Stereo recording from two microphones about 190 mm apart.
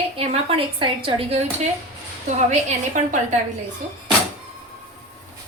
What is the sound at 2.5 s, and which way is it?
Speech, 40° right (ahead or behind).